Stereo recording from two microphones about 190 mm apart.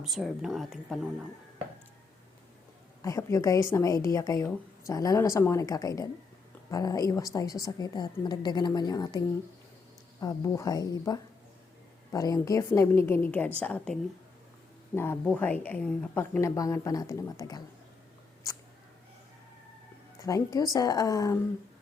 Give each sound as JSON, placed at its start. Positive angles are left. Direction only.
{"t": 0.0, "sound": "a woman's voice", "side_deg": 0}
{"t": 3.0, "sound": "a woman's voice", "side_deg": 15}
{"t": 20.2, "sound": "a woman's voice", "side_deg": 20}